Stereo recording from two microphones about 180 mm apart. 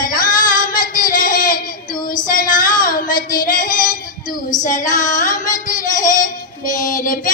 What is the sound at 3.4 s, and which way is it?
Child singing, 50° left (ahead or behind).